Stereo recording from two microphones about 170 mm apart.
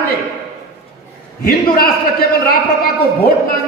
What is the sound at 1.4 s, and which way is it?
A man's voice, 60° left (ahead or behind).